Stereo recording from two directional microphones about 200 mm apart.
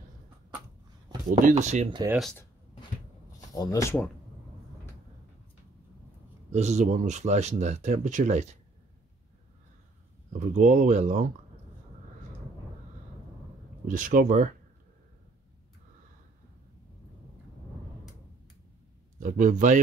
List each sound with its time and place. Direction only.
1.3 s speech: 35° right (ahead or behind)
2.0 s speech: centre (ahead or behind)
3.3 s speech: 20° left (ahead or behind)
6.5 s speech: 35° right (ahead or behind)
10.5 s speech: 40° right (ahead or behind)
13.8 s speech: 45° right (ahead or behind)
19.1 s speech: 40° right (ahead or behind)